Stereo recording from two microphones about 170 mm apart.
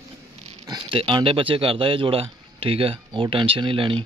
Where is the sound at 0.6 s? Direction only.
25° right (ahead or behind).